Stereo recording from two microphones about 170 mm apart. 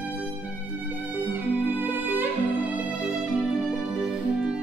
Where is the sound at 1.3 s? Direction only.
10° right (ahead or behind).